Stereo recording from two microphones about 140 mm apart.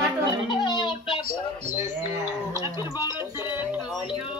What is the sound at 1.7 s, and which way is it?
Bird, 55° right (ahead or behind).